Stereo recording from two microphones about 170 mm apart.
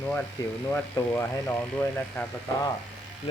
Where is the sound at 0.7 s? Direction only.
15° left (ahead or behind).